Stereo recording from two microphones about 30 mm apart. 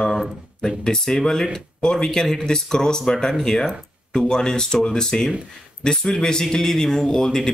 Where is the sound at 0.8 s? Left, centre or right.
Centre.